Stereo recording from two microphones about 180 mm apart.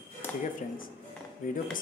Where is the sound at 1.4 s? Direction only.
50° left (ahead or behind).